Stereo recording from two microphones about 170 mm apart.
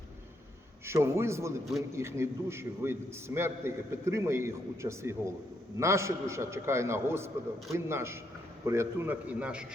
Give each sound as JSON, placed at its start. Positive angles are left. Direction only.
{"t": 0.9, "sound": "a man's voice", "side_deg": -15}